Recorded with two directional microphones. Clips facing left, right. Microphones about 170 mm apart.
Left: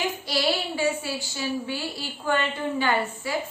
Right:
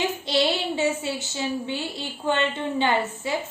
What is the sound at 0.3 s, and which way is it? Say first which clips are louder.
A woman's voice: right 3 dB; 20° right (ahead or behind).